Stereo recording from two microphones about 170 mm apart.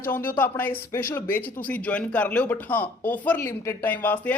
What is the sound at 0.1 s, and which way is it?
Speech, 10° left (ahead or behind).